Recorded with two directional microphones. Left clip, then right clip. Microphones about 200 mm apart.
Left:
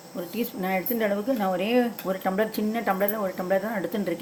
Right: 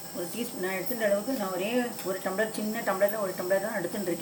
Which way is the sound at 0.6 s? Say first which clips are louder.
Left 2 dB; 45° left (ahead or behind).